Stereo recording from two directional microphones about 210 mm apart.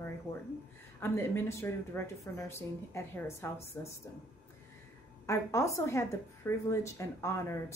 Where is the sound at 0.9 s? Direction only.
10° left (ahead or behind).